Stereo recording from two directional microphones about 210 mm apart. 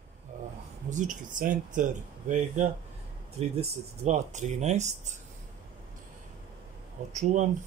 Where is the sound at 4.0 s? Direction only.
35° right (ahead or behind).